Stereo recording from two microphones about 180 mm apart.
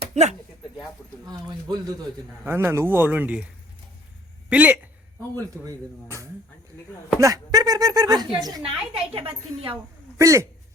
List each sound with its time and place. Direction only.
0.1 s speech: 40° right (ahead or behind)
1.3 s a woman's voice: 25° right (ahead or behind)
2.4 s speech: 10° right (ahead or behind)
4.4 s speech: 10° right (ahead or behind)
5.3 s a woman's voice: 20° right (ahead or behind)
10.2 s speech: 15° right (ahead or behind)